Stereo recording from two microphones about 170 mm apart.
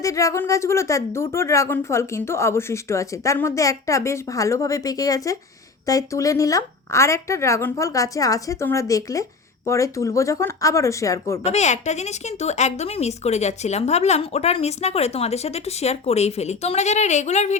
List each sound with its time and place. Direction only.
0.0 s a woman's voice: 20° left (ahead or behind)
11.4 s speech: 40° left (ahead or behind)